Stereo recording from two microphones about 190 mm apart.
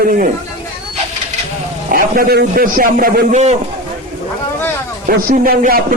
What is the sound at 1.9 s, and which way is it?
A man's voice, 55° right (ahead or behind).